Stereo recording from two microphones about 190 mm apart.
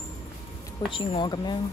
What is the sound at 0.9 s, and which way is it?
Speech, 25° left (ahead or behind).